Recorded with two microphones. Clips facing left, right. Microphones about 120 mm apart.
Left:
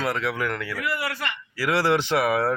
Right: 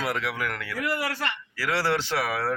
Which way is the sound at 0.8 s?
40° right (ahead or behind).